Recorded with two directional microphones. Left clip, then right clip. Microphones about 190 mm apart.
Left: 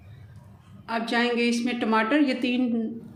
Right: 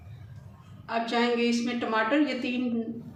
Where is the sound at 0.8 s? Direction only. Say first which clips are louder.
Left 1 dB; 45° left (ahead or behind).